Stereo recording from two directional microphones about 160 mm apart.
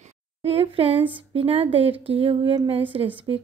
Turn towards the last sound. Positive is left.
turn(degrees=-35)  # may be behind; listen again after turning